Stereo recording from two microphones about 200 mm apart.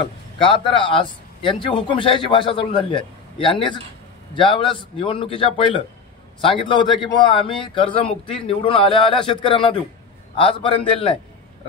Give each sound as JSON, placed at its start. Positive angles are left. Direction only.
{"t": 0.4, "sound": "a man's voice", "side_deg": 25}